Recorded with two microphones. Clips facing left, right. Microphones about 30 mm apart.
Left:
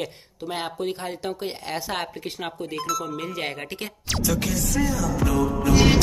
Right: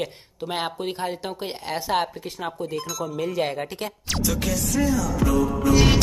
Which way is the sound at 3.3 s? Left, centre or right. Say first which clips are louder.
Right 4 dB; centre.